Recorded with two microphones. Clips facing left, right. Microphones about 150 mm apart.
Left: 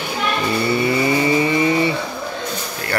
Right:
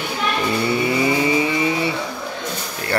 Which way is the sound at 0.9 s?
10° right (ahead or behind).